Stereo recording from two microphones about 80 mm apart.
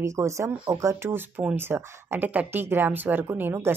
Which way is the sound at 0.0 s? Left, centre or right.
Right.